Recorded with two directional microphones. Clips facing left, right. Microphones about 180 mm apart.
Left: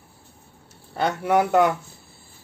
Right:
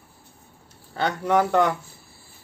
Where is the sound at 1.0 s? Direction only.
5° left (ahead or behind).